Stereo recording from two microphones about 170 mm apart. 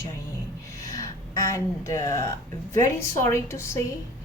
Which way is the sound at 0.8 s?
20° left (ahead or behind).